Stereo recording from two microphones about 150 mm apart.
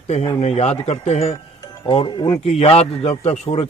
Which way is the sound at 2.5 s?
45° left (ahead or behind).